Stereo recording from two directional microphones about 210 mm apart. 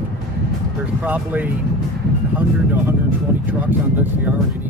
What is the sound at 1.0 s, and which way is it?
Speech, 10° right (ahead or behind).